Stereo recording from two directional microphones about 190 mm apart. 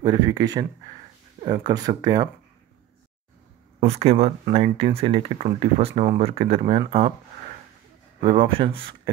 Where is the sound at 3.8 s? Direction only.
35° right (ahead or behind).